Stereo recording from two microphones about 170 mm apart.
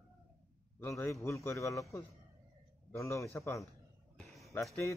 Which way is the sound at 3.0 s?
15° left (ahead or behind).